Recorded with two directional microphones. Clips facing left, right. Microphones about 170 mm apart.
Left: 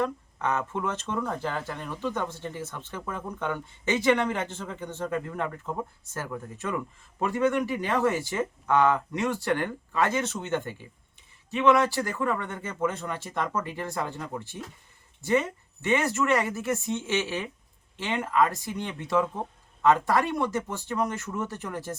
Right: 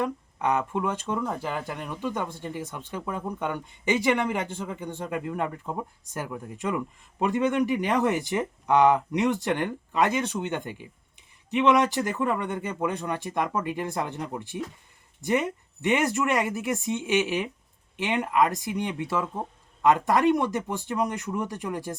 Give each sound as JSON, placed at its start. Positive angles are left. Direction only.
{"t": 0.0, "sound": "speech", "side_deg": -15}